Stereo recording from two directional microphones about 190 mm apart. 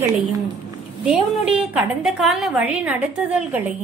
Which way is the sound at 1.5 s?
5° right (ahead or behind).